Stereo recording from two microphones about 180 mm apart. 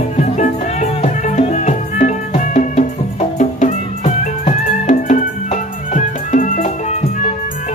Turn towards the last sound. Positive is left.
turn(degrees=45)  # may be behind; listen again after turning